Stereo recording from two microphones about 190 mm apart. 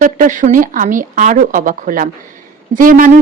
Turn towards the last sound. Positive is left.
turn(degrees=-45)  # may be behind; listen again after turning